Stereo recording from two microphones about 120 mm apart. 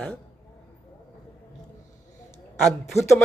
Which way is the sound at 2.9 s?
65° left (ahead or behind).